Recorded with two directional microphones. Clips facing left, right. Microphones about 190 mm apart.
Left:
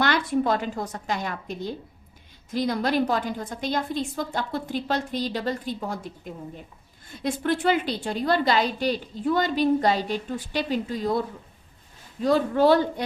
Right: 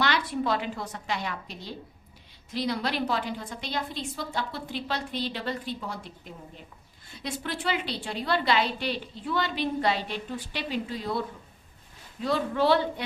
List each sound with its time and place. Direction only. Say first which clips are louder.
0.0 s a woman's voice: left 4 dB; 50° left (ahead or behind)
7.1 s a woman's voice: left 9 dB; 50° left (ahead or behind)
12.2 s a woman's voice: left 6 dB; 45° left (ahead or behind)